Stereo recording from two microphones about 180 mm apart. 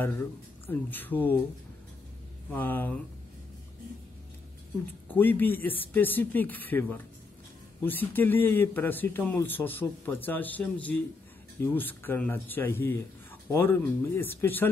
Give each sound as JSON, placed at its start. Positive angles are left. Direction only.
{"t": 0.7, "sound": "a man's voice", "side_deg": 10}
{"t": 2.5, "sound": "a man's voice", "side_deg": 10}
{"t": 5.0, "sound": "a man's voice", "side_deg": 10}